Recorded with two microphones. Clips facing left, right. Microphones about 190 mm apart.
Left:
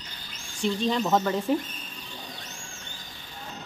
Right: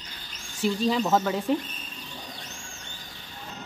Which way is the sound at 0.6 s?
5° right (ahead or behind).